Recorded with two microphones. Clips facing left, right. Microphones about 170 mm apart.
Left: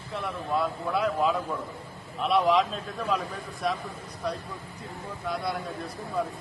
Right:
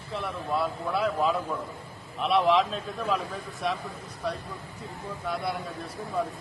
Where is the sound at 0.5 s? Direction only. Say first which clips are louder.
Left 1 dB; 5° right (ahead or behind).